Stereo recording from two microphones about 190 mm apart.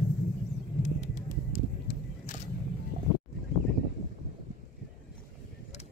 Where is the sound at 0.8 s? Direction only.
40° left (ahead or behind).